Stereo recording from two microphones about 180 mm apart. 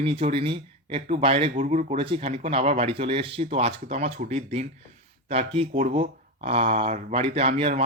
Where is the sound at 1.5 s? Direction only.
45° right (ahead or behind).